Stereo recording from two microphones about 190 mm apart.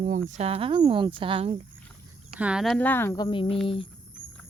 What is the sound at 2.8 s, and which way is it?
Speech, 10° left (ahead or behind).